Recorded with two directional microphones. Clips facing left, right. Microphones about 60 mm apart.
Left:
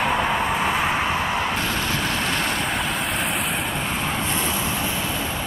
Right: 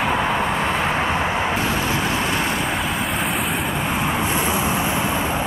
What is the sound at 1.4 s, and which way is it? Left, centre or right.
Vehicle, centre.